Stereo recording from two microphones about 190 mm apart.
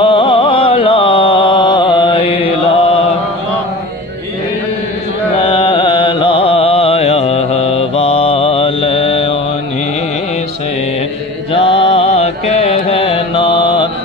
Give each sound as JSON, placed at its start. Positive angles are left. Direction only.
{"t": 0.0, "sound": "a sound", "side_deg": 25}
{"t": 5.3, "sound": "music", "side_deg": 25}
{"t": 11.5, "sound": "mantra", "side_deg": 30}